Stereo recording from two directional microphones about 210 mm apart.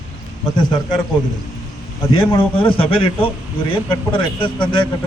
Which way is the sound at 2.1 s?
20° left (ahead or behind).